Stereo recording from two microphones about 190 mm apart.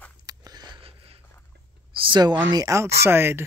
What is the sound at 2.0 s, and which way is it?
Speech, 25° right (ahead or behind).